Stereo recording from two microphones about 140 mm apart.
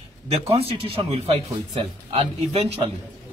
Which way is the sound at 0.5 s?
45° right (ahead or behind).